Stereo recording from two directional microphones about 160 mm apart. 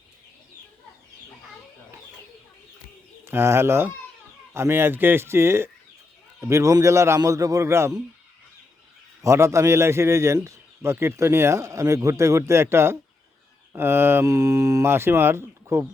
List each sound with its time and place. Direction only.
3.2 s a man's voice: 15° right (ahead or behind)
9.2 s a man's voice: 20° right (ahead or behind)